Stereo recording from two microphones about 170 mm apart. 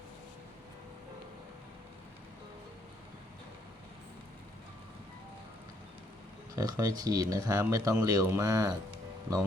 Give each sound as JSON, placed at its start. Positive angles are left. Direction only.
{"t": 6.6, "sound": "speech", "side_deg": -20}